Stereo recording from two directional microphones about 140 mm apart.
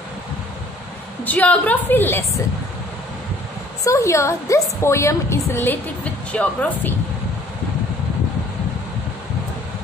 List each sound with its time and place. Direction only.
1.2 s a woman's voice: 10° left (ahead or behind)
3.8 s a woman's voice: 20° left (ahead or behind)